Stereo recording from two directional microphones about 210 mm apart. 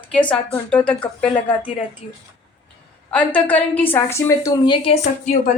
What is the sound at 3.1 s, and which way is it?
A woman's voice, 5° left (ahead or behind).